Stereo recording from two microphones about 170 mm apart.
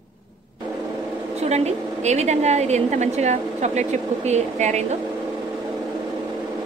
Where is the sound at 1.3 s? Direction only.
40° right (ahead or behind).